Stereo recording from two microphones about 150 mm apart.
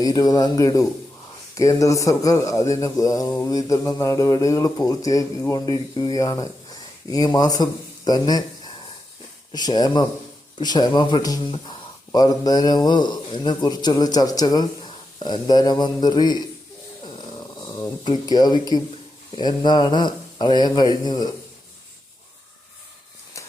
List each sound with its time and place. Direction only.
0.0 s a man's voice: 25° left (ahead or behind)
17.3 s a sound: 30° left (ahead or behind)
19.4 s a man's voice: 30° left (ahead or behind)